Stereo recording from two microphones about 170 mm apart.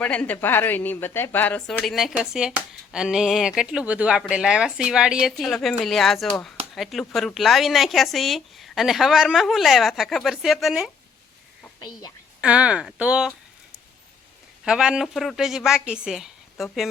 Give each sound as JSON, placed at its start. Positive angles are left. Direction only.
{"t": 0.0, "sound": "speech", "side_deg": 5}
{"t": 11.8, "sound": "a woman's voice", "side_deg": 25}
{"t": 12.4, "sound": "speech", "side_deg": -5}
{"t": 14.6, "sound": "speech", "side_deg": -5}